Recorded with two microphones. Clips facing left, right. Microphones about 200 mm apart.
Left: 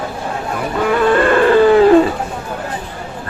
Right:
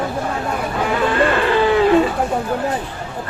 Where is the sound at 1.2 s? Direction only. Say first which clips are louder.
Left 7 dB; 45° left (ahead or behind).